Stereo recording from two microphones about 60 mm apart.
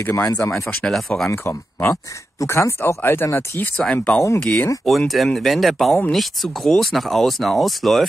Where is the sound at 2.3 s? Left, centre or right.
Left.